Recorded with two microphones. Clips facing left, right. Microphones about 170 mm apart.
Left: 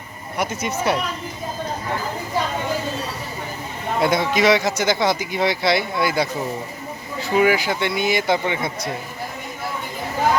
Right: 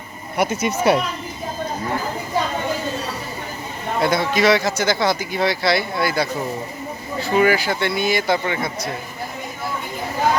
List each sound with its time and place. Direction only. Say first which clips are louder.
0.3 s speech: right 4 dB; 10° right (ahead or behind)
4.0 s speech: even; 20° left (ahead or behind)